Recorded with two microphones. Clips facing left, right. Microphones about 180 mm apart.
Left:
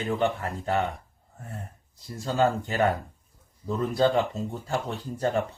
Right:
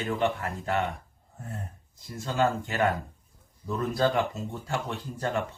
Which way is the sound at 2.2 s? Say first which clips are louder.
Left 2 dB; 35° left (ahead or behind).